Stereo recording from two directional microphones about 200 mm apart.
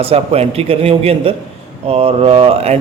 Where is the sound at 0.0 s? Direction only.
30° right (ahead or behind).